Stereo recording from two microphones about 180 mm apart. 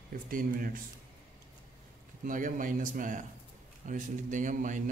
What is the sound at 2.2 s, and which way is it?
A man's voice, 45° right (ahead or behind).